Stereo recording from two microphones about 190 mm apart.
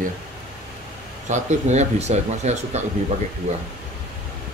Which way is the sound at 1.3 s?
35° right (ahead or behind).